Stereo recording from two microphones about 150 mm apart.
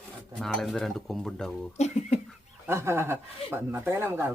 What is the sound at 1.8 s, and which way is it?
Beatboxing, 50° left (ahead or behind).